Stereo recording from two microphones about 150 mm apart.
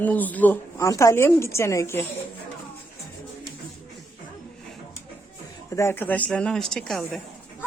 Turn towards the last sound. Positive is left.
turn(degrees=5)  # may be behind; listen again after turning